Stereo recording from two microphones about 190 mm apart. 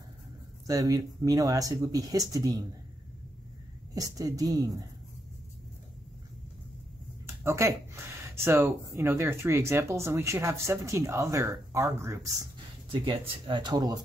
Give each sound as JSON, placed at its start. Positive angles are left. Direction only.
{"t": 0.7, "sound": "speech", "side_deg": -20}
{"t": 3.9, "sound": "speech", "side_deg": -20}
{"t": 7.2, "sound": "speech", "side_deg": -15}